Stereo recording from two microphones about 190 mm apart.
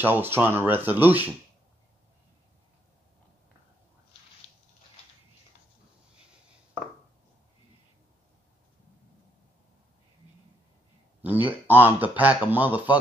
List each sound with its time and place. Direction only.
0.0 s speech: 10° right (ahead or behind)
11.2 s speech: 10° right (ahead or behind)